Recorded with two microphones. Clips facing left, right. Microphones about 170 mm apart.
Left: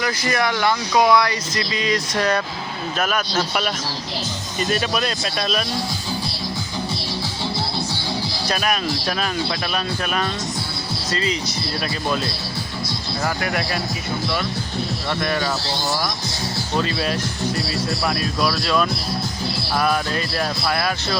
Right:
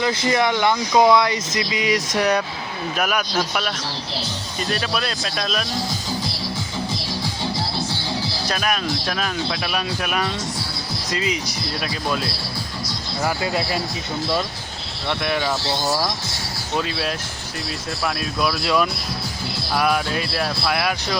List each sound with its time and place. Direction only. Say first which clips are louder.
0.0 s speech: right 2 dB; 25° right (ahead or behind)
4.7 s speech: left 2 dB; 5° left (ahead or behind)
8.4 s speech: left 2 dB; centre (ahead or behind)
13.2 s speech: right 1 dB; 20° right (ahead or behind)
15.2 s speech: even; 10° right (ahead or behind)
16.7 s speech: left 1 dB; 5° right (ahead or behind)
18.6 s speech: even; 15° right (ahead or behind)